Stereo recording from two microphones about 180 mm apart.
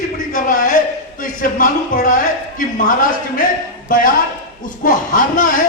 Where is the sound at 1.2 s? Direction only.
50° left (ahead or behind).